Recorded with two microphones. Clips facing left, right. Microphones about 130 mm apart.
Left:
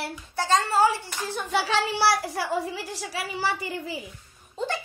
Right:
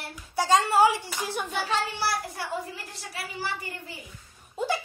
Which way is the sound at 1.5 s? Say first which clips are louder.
Left 7 dB; 90° left.